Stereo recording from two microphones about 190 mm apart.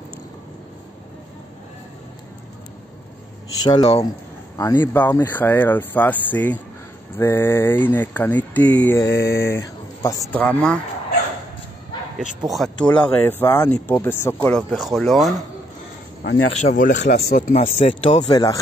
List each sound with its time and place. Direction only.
3.6 s speech: 20° left (ahead or behind)
9.1 s speech: 60° left (ahead or behind)
9.4 s speech: 15° left (ahead or behind)
12.4 s speech: centre (ahead or behind)
14.7 s speech: centre (ahead or behind)
16.5 s speech: 40° left (ahead or behind)
17.0 s speech: 60° left (ahead or behind)
17.6 s speech: 30° left (ahead or behind)